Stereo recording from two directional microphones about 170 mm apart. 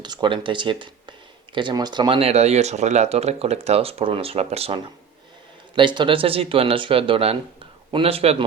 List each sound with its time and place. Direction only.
0.0 s speech: 25° right (ahead or behind)